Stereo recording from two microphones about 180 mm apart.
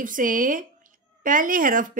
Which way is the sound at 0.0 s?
50° right (ahead or behind).